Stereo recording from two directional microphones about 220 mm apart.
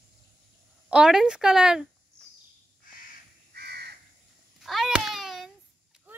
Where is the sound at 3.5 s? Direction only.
45° right (ahead or behind).